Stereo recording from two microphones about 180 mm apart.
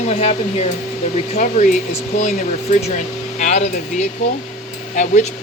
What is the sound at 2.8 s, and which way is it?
Speech, 40° left (ahead or behind).